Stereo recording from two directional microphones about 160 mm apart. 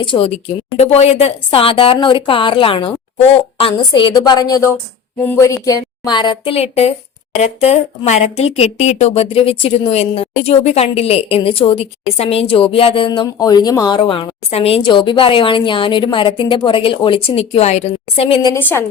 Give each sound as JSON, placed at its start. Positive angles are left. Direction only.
{"t": 0.0, "sound": "a woman's voice", "side_deg": 35}
{"t": 18.4, "sound": "a woman's voice", "side_deg": 15}